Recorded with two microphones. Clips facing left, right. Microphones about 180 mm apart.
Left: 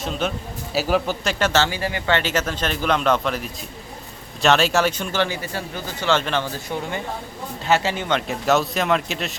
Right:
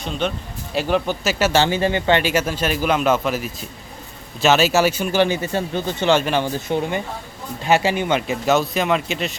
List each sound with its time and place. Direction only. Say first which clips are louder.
0.0 s speech: right 1 dB; centre (ahead or behind); by 6.1 s 25° right (ahead or behind)
6.1 s speech: right 4 dB; 10° right (ahead or behind)